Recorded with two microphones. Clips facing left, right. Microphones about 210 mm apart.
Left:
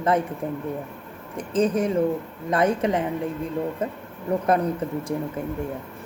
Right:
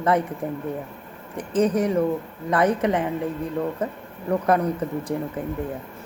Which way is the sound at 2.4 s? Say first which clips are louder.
Right 1 dB; 30° left (ahead or behind).